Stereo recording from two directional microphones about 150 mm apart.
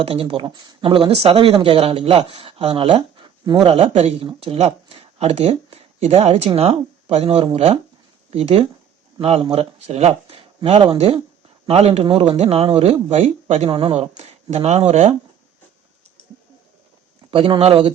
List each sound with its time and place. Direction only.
0.0 s speech: 40° right (ahead or behind)
17.3 s speech: 35° right (ahead or behind)